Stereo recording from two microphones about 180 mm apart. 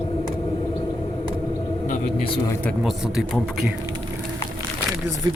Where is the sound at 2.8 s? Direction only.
5° right (ahead or behind).